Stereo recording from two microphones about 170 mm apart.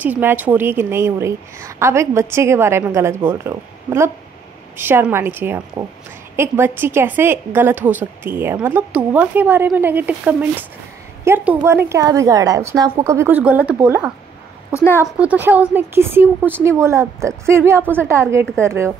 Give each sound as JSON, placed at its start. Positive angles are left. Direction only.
{"t": 0.0, "sound": "a woman's voice", "side_deg": -10}
{"t": 14.7, "sound": "a woman's voice", "side_deg": 15}
{"t": 15.1, "sound": "a woman's voice", "side_deg": -10}